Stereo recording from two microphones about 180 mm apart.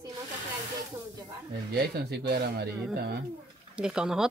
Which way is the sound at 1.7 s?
65° right (ahead or behind).